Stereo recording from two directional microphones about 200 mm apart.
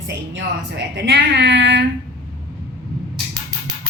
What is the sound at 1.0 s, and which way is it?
Speech, 60° right (ahead or behind).